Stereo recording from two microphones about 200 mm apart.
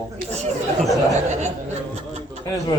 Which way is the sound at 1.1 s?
35° right (ahead or behind).